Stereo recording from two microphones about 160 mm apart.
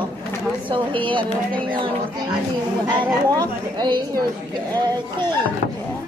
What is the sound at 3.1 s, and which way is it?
Speech, 25° right (ahead or behind).